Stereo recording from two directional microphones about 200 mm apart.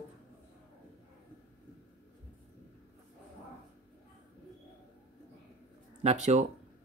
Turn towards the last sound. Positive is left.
turn(degrees=-35)  # may be behind; listen again after turning